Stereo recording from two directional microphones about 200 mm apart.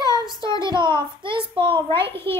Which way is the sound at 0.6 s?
25° right (ahead or behind).